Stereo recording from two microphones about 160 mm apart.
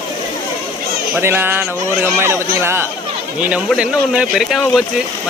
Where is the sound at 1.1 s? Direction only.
15° right (ahead or behind).